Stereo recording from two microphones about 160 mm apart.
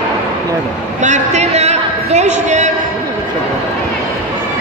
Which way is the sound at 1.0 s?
50° right (ahead or behind).